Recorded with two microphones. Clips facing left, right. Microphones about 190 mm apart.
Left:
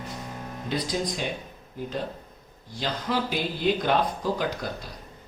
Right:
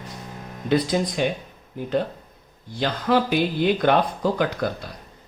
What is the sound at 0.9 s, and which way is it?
Speech, 65° right (ahead or behind).